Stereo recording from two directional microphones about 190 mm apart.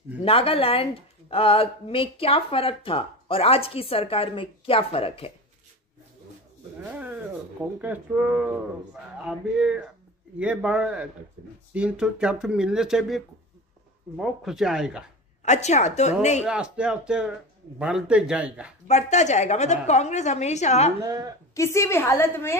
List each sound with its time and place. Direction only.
0.2 s speech: 30° left (ahead or behind)
6.8 s speech: 10° right (ahead or behind)
9.2 s speech: 5° right (ahead or behind)
15.4 s a woman's voice: 35° left (ahead or behind)
16.4 s speech: 5° right (ahead or behind)
18.9 s a woman's voice: 35° left (ahead or behind)
21.0 s a woman's voice: 20° right (ahead or behind)
21.5 s a woman's voice: 15° left (ahead or behind)